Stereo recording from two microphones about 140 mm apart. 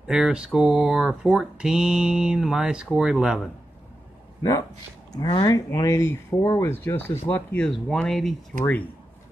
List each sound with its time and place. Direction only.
0.0 s speech: 5° right (ahead or behind)
4.4 s speech: 25° left (ahead or behind); by 8.4 s centre (ahead or behind)